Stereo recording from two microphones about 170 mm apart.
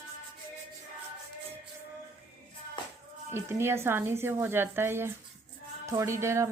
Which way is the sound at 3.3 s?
15° right (ahead or behind).